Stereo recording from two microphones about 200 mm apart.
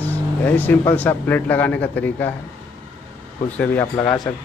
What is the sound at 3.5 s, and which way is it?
Speech, 10° left (ahead or behind).